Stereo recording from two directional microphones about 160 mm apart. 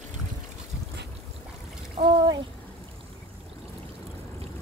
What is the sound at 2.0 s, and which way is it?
Speech, 25° right (ahead or behind).